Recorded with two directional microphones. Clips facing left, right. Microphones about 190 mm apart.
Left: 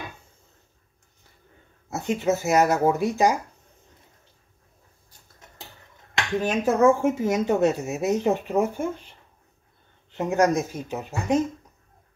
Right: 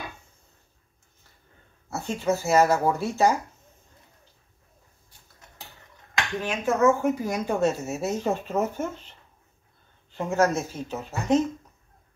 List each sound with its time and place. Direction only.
1.9 s speech: 15° left (ahead or behind)
6.4 s speech: 35° left (ahead or behind); by 9.1 s 10° left (ahead or behind)
10.1 s speech: 15° left (ahead or behind)